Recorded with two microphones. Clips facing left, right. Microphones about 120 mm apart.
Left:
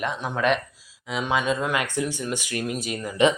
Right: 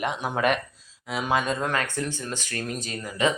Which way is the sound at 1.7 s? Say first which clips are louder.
Left 2 dB; 15° left (ahead or behind).